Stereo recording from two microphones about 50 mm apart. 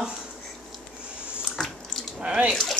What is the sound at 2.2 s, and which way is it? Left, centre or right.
Speech, centre.